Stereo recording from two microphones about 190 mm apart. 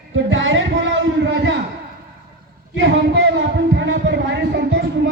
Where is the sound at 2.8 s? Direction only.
70° right (ahead or behind).